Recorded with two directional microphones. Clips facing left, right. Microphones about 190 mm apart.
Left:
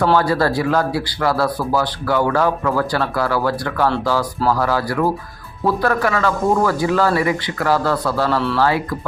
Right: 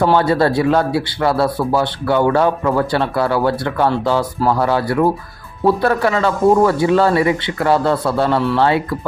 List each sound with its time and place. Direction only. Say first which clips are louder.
0.0 s speech: right 2 dB; 20° right (ahead or behind)
8.4 s speech: right 3 dB; 15° right (ahead or behind)